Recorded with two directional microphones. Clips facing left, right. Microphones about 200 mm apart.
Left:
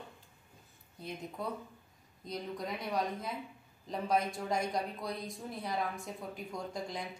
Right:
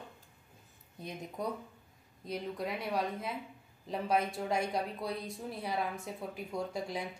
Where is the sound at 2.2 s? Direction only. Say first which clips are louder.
Right 2 dB; 5° right (ahead or behind).